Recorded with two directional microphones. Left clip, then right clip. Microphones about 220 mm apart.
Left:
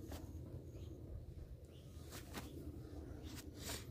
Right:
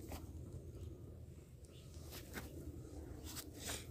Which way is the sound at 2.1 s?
5° left (ahead or behind).